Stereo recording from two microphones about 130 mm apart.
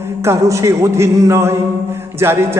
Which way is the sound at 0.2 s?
20° right (ahead or behind).